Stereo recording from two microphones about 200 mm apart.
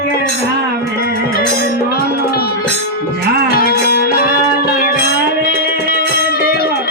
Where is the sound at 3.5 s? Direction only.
50° left (ahead or behind).